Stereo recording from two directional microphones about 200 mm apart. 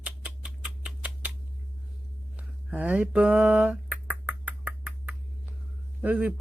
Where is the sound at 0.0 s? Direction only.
5° right (ahead or behind).